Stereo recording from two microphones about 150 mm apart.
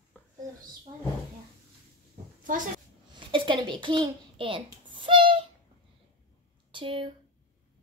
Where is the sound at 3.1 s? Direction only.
30° right (ahead or behind).